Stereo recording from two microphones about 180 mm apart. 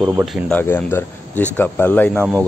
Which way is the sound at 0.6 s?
15° left (ahead or behind).